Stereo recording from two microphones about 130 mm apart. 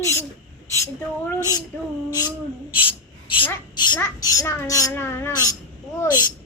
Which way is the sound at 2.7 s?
40° left (ahead or behind).